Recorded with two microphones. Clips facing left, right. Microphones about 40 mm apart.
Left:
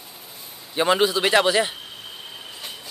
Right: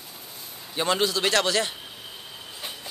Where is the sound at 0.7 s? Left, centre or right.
Centre.